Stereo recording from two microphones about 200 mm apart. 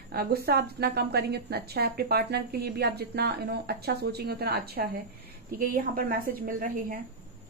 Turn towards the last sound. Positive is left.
turn(degrees=-45)  # may be behind; listen again after turning